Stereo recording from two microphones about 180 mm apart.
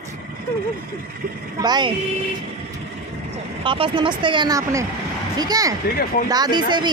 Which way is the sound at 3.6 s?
30° right (ahead or behind).